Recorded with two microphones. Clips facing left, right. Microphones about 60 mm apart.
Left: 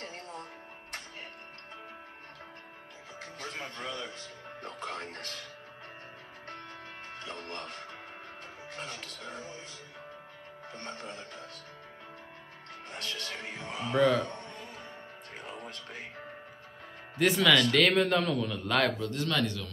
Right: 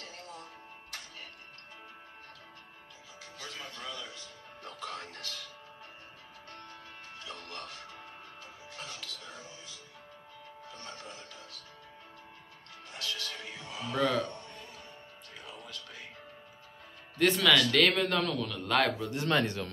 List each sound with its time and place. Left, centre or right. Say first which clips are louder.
0.0 s music: left 4 dB; left
3.2 s speech: left 4 dB; left
6.5 s music: left 4 dB; left
10.7 s speech: left 5 dB; left
12.9 s music: even; left
15.3 s music: left 3 dB; left
17.2 s a man's voice: left 1 dB; centre
18.7 s a man's voice: even; centre
18.9 s speech: left 2 dB; centre
19.2 s speech: right 3 dB; right